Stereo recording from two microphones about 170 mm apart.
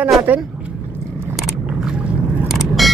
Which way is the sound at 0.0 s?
10° right (ahead or behind).